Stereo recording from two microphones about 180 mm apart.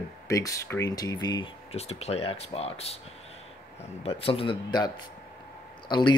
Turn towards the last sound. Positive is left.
turn(degrees=25)  # may be behind; listen again after turning